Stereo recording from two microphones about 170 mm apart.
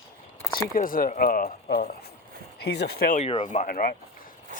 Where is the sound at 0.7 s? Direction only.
55° left (ahead or behind).